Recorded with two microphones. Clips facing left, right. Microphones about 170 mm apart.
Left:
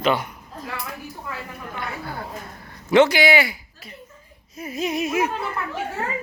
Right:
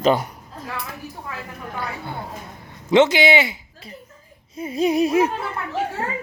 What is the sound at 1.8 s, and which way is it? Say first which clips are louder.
Speech: left 1 dB; 25° right (ahead or behind).